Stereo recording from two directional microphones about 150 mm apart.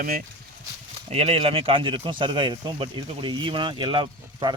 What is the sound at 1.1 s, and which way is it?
Speech, 40° right (ahead or behind).